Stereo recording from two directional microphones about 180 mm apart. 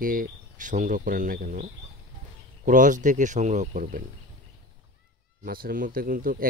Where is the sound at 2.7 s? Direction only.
45° right (ahead or behind).